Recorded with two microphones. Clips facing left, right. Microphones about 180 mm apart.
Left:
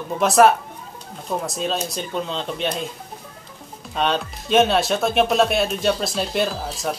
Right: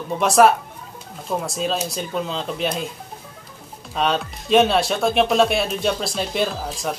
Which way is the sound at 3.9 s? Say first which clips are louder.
Even; centre (ahead or behind).